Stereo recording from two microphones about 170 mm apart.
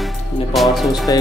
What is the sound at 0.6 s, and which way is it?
Speech, centre (ahead or behind).